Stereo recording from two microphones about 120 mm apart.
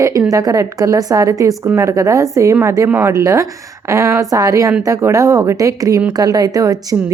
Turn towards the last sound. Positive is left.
turn(degrees=-30)  # may be behind; listen again after turning